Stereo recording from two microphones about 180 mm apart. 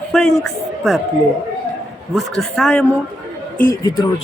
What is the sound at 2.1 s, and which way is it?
Speech, 5° left (ahead or behind).